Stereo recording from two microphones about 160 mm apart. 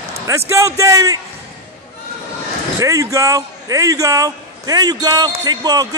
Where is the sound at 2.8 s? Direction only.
20° right (ahead or behind).